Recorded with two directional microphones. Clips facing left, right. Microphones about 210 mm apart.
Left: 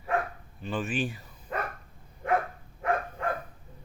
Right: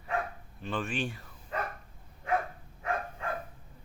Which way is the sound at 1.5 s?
55° left (ahead or behind).